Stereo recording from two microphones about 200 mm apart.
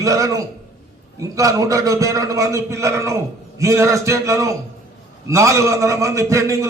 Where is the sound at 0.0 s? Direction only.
15° right (ahead or behind).